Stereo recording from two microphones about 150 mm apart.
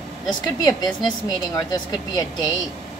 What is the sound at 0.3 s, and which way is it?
A woman's voice, 25° left (ahead or behind).